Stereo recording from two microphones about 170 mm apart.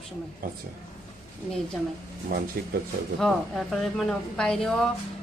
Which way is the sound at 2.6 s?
65° right (ahead or behind).